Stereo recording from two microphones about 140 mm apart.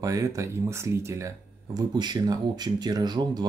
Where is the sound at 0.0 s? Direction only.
25° right (ahead or behind).